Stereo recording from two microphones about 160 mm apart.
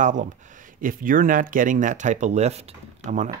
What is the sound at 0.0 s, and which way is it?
Speech, 50° right (ahead or behind).